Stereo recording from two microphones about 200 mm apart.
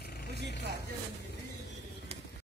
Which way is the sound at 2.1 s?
30° right (ahead or behind).